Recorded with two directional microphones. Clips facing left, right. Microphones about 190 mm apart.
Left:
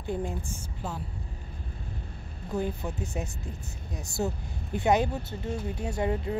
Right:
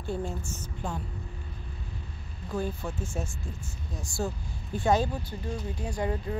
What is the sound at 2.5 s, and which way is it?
Speech, 20° left (ahead or behind).